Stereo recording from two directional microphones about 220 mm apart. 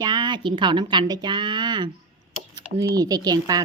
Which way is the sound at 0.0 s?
20° right (ahead or behind).